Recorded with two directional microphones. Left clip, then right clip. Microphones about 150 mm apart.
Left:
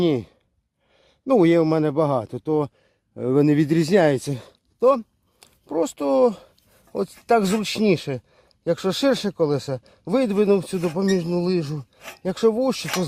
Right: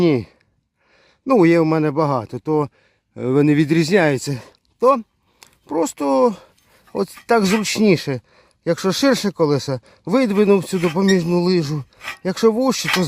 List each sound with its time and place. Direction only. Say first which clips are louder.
0.0 s speech: right 4 dB; 30° right (ahead or behind)
4.3 s a sound: right 3 dB; 20° right (ahead or behind)
6.9 s speech: right 2 dB; 25° right (ahead or behind)